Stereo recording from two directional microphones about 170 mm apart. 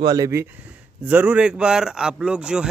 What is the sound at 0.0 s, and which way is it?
Speech, 20° right (ahead or behind).